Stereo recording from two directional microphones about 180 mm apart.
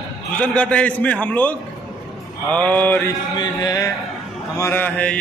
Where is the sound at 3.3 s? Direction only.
25° left (ahead or behind).